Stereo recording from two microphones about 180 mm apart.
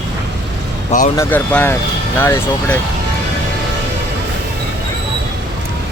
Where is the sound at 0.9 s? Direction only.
40° left (ahead or behind).